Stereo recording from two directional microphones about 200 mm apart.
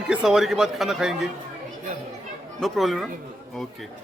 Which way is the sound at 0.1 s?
Centre (ahead or behind).